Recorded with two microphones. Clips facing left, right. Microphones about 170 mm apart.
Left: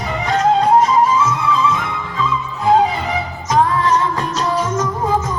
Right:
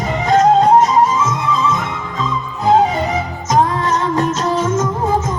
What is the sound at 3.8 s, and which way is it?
Music, 25° right (ahead or behind).